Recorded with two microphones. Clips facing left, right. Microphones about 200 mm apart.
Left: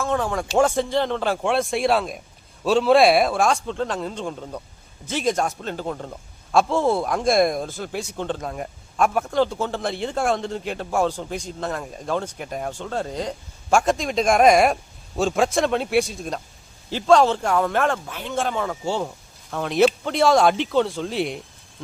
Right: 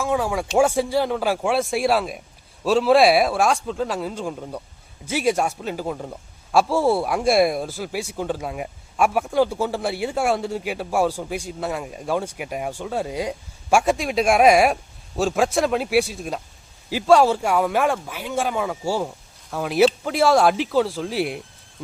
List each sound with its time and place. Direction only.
0.0 s a man's voice: 10° right (ahead or behind)